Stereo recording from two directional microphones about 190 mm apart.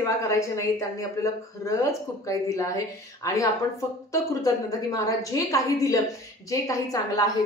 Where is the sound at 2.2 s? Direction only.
15° left (ahead or behind).